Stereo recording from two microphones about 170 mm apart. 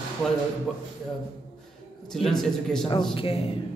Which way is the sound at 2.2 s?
Centre (ahead or behind).